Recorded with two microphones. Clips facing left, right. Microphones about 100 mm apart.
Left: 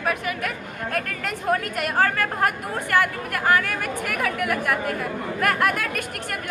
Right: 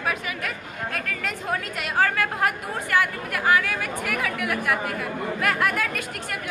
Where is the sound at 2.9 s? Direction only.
55° left (ahead or behind).